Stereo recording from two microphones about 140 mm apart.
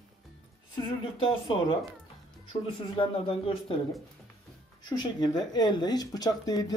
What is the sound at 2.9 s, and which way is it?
Speech, 40° left (ahead or behind).